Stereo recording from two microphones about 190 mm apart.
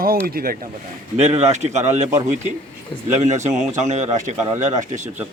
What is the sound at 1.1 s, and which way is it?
Speech, 35° right (ahead or behind).